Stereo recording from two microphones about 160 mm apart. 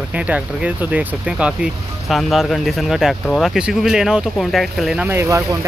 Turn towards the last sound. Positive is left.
turn(degrees=-15)  # may be behind; listen again after turning